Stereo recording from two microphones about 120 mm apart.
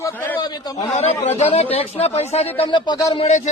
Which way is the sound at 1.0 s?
60° left (ahead or behind).